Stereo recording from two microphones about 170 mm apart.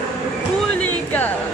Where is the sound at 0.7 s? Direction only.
10° left (ahead or behind).